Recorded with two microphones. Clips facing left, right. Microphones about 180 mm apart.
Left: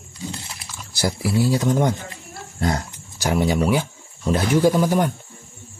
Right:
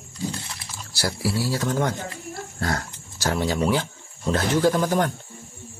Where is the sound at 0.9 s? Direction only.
20° left (ahead or behind).